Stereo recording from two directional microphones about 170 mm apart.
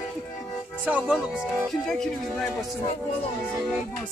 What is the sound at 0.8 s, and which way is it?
Speech, 5° right (ahead or behind).